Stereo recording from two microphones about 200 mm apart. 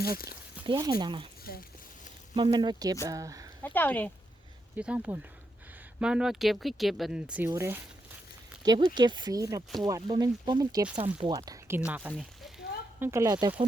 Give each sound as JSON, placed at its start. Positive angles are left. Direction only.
{"t": 0.0, "sound": "speech", "side_deg": 50}
{"t": 0.6, "sound": "speech", "side_deg": -20}
{"t": 2.3, "sound": "speech", "side_deg": -25}
{"t": 3.6, "sound": "speech", "side_deg": 10}
{"t": 4.8, "sound": "speech", "side_deg": -5}
{"t": 7.3, "sound": "speech", "side_deg": -10}
{"t": 11.9, "sound": "speech", "side_deg": -5}
{"t": 13.0, "sound": "speech", "side_deg": -15}